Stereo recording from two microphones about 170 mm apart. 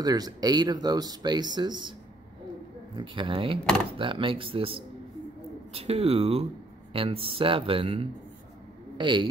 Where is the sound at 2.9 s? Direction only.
30° right (ahead or behind).